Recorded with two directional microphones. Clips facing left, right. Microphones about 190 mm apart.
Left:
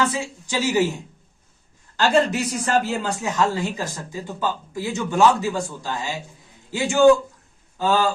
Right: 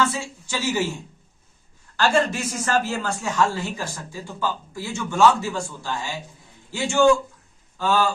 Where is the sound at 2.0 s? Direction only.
20° left (ahead or behind).